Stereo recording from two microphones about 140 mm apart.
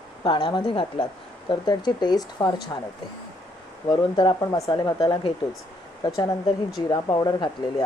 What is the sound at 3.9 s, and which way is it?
Speech, 35° left (ahead or behind).